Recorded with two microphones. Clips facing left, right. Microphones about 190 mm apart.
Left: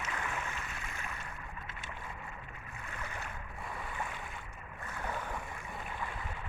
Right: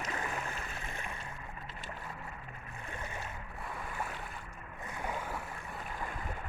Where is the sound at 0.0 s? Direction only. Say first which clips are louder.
Right 1 dB; 35° right (ahead or behind).